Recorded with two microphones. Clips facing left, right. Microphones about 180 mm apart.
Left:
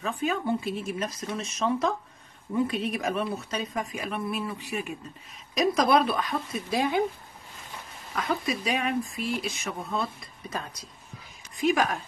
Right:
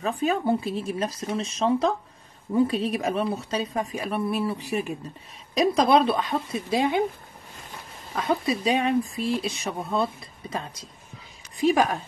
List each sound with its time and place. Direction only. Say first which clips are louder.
0.0 s speech: right 4 dB; 35° right (ahead or behind)
8.1 s speech: right 4 dB; 30° right (ahead or behind)